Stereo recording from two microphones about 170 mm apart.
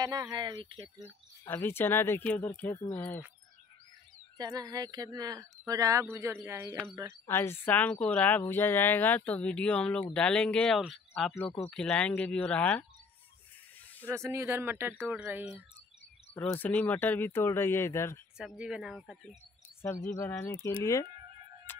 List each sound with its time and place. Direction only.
0.0 s speech: 25° right (ahead or behind)
1.5 s a woman's voice: 10° left (ahead or behind)
4.4 s speech: 20° right (ahead or behind)
7.2 s a woman's voice: 15° left (ahead or behind)
14.0 s speech: 15° right (ahead or behind)
16.3 s a woman's voice: 10° left (ahead or behind)
18.4 s speech: 5° right (ahead or behind)
19.8 s a woman's voice: 15° left (ahead or behind)
21.7 s music: 10° left (ahead or behind)